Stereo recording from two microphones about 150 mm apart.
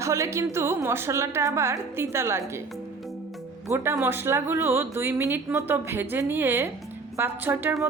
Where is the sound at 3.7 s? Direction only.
20° right (ahead or behind).